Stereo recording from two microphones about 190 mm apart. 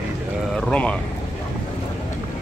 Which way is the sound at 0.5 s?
5° left (ahead or behind).